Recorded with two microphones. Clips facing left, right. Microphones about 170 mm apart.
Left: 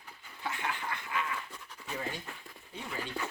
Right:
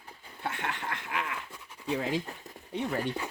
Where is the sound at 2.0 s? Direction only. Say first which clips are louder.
Right 7 dB; 90° right.